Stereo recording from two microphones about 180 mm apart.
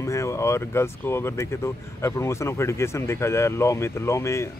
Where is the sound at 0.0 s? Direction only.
15° left (ahead or behind).